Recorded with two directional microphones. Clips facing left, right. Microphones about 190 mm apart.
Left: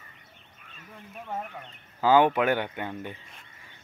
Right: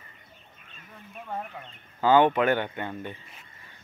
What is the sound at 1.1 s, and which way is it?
Speech, 5° left (ahead or behind).